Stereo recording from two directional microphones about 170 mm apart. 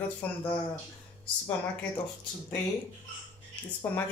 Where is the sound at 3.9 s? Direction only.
10° left (ahead or behind).